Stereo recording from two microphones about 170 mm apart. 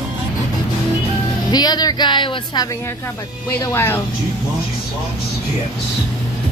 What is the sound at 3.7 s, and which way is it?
Speech, 15° left (ahead or behind).